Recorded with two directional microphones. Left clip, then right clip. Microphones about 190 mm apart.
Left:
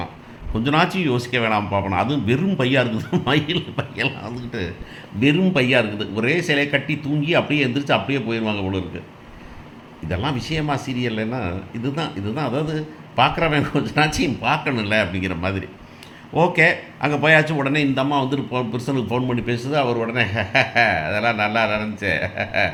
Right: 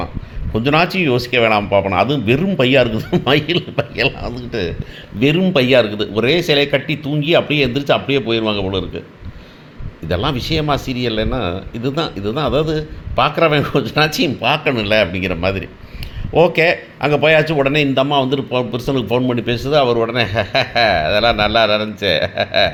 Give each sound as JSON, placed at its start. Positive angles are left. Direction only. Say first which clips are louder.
{"t": 0.5, "sound": "a man's voice", "louder": "right 4 dB", "side_deg": -25}
{"t": 10.1, "sound": "a man's voice", "louder": "right 6 dB", "side_deg": -25}